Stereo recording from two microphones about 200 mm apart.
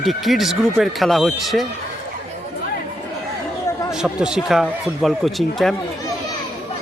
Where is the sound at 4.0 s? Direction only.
5° right (ahead or behind).